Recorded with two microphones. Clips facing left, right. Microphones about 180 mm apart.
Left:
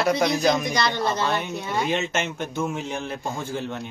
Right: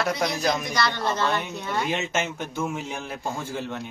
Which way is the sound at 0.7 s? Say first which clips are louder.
Left 2 dB; 15° left (ahead or behind).